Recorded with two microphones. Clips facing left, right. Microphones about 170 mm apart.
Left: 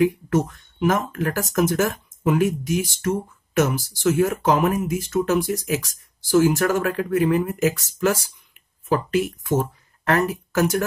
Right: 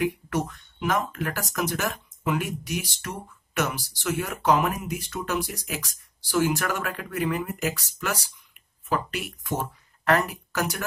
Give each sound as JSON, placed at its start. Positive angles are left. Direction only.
{"t": 0.3, "sound": "speech", "side_deg": 45}